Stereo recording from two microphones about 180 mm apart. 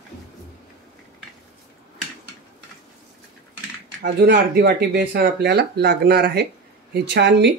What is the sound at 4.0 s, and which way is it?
Speech, 70° right (ahead or behind).